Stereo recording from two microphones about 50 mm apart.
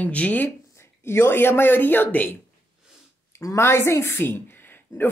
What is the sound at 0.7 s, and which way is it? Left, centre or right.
Speech, left.